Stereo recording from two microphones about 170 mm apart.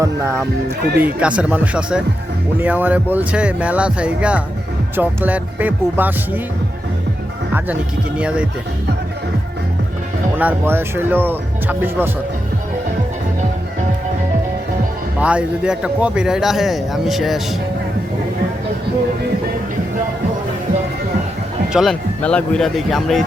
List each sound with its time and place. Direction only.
0.0 s speech: 15° right (ahead or behind)
10.3 s speech: 10° right (ahead or behind)
15.2 s speech: 5° right (ahead or behind)
21.7 s speech: centre (ahead or behind)